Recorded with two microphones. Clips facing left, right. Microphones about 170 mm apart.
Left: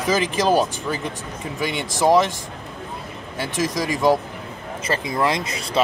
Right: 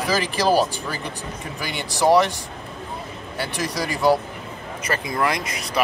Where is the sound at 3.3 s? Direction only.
20° left (ahead or behind).